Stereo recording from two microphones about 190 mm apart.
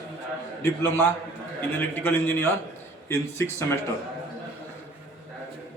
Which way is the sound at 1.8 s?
10° left (ahead or behind).